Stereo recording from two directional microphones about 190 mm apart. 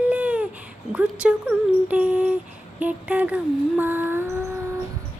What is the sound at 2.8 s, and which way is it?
Music, 5° right (ahead or behind).